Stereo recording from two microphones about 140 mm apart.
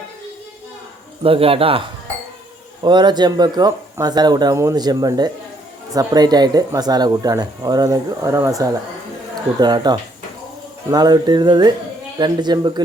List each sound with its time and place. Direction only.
1.2 s speech: 40° right (ahead or behind)
2.8 s speech: 30° right (ahead or behind)